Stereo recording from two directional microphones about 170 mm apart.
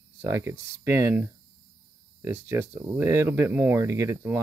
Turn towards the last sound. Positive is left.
turn(degrees=-15)  # may be behind; listen again after turning